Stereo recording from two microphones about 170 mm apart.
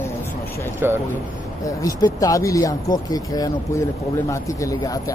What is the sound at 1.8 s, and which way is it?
Speech, 20° left (ahead or behind).